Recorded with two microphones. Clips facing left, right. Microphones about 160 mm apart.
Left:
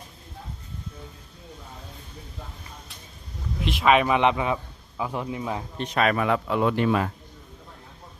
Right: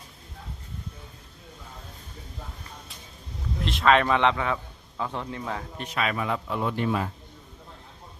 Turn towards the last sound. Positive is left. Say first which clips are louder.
# left 4 dB
turn(degrees=85)